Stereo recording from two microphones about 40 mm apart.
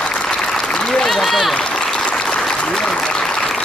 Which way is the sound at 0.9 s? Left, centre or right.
Centre.